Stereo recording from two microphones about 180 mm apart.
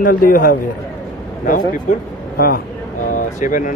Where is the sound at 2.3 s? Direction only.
55° left (ahead or behind).